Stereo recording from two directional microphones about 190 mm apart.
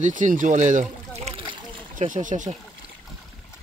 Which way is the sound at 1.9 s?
40° right (ahead or behind).